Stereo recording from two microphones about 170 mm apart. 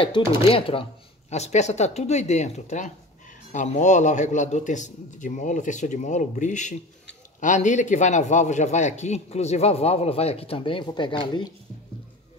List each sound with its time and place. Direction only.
0.5 s a man's voice: 30° left (ahead or behind)